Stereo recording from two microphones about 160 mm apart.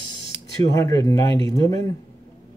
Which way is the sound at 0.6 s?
20° left (ahead or behind).